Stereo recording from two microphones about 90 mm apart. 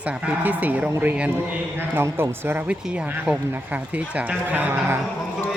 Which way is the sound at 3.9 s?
15° right (ahead or behind).